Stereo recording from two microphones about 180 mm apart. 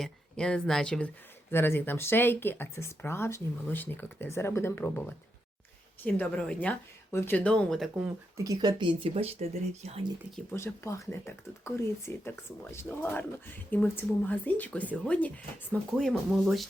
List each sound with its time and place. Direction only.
0.0 s speech: 5° left (ahead or behind)
8.4 s speech: 25° right (ahead or behind)
10.5 s speech: 15° left (ahead or behind)